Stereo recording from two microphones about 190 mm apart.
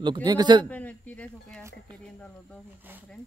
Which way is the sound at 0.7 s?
10° left (ahead or behind).